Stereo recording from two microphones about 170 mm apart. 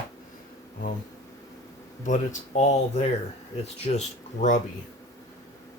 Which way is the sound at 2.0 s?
45° left (ahead or behind).